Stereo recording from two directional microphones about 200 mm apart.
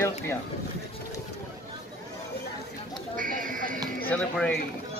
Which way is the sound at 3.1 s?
45° right (ahead or behind).